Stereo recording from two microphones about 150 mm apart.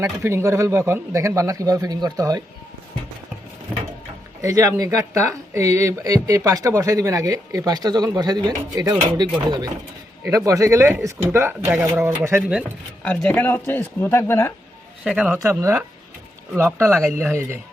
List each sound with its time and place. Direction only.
0.0 s speech: 15° right (ahead or behind)
4.4 s speech: 20° right (ahead or behind); by 12.7 s 5° right (ahead or behind)
13.1 s speech: 10° left (ahead or behind)
15.0 s speech: 5° right (ahead or behind)
15.4 s speech: 20° right (ahead or behind)
17.0 s speech: 5° right (ahead or behind)